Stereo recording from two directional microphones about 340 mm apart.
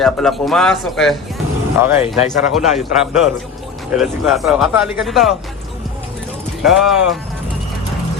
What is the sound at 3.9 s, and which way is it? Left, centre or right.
Speech, centre.